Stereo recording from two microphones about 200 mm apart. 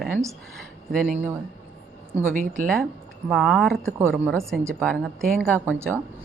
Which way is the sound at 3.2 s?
Centre (ahead or behind).